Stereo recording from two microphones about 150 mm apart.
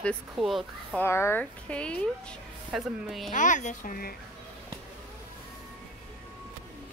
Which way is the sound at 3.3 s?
55° left (ahead or behind).